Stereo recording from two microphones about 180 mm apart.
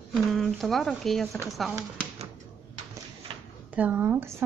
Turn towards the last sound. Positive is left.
turn(degrees=-10)  # may be behind; listen again after turning